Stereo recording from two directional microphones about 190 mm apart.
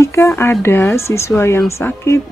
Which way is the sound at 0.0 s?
15° left (ahead or behind).